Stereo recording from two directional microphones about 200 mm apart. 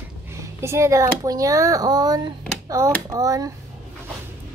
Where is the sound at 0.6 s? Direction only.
15° right (ahead or behind).